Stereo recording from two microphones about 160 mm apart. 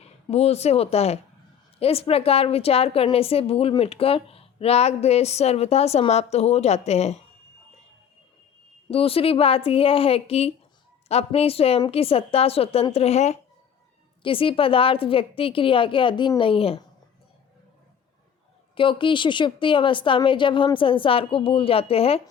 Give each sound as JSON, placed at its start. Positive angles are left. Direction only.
{"t": 0.0, "sound": "a woman's voice", "side_deg": 40}
{"t": 8.9, "sound": "a woman's voice", "side_deg": 35}
{"t": 14.2, "sound": "a woman's voice", "side_deg": 35}
{"t": 18.7, "sound": "a woman's voice", "side_deg": 30}